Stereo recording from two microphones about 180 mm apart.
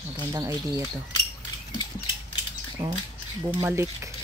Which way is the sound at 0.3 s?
20° right (ahead or behind).